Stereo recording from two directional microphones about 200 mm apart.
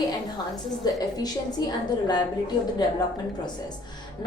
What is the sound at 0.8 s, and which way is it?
Speech, 20° left (ahead or behind).